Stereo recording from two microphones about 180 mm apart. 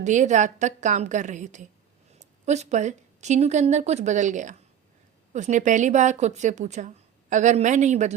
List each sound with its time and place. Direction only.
0.0 s a woman's voice: 40° right (ahead or behind)